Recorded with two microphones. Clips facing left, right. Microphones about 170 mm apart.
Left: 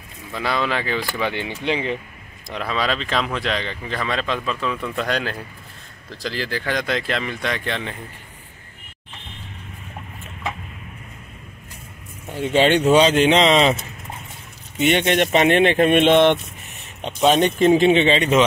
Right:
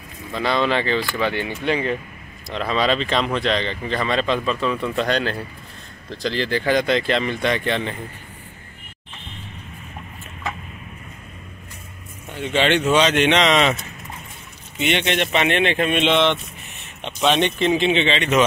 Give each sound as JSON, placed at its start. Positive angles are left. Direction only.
{"t": 0.3, "sound": "speech", "side_deg": 5}
{"t": 2.5, "sound": "speech", "side_deg": 5}
{"t": 12.5, "sound": "speech", "side_deg": 40}
{"t": 14.8, "sound": "speech", "side_deg": 45}